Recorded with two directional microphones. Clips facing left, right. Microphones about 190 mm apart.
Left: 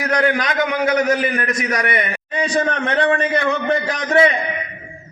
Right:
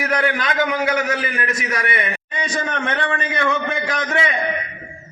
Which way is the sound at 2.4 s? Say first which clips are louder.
Left 5 dB; 35° left (ahead or behind).